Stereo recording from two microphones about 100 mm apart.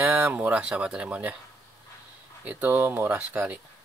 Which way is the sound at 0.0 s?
20° right (ahead or behind).